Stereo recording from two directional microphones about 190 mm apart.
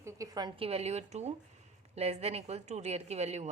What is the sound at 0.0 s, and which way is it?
A woman's voice, 20° right (ahead or behind).